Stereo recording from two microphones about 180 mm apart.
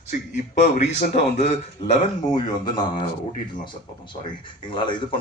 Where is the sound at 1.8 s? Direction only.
25° left (ahead or behind).